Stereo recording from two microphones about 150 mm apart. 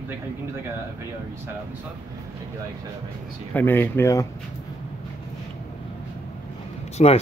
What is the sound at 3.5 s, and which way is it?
Speech, 15° left (ahead or behind).